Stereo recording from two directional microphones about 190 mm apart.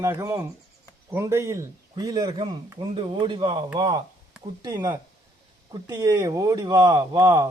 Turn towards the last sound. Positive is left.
turn(degrees=-20)  # may be behind; listen again after turning